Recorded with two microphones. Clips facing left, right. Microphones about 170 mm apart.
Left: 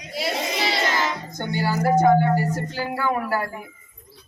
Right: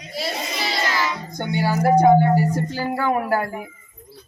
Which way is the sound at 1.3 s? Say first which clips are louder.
Right 3 dB; 15° right (ahead or behind).